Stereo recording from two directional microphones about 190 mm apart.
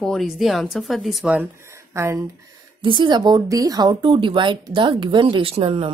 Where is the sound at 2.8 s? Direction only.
25° right (ahead or behind).